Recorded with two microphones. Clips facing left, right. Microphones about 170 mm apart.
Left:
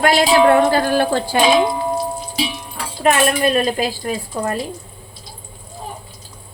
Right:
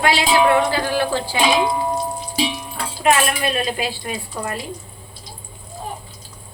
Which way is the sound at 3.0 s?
45° left (ahead or behind).